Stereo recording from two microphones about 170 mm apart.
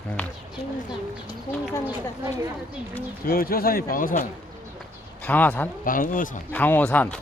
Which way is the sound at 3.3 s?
60° left (ahead or behind).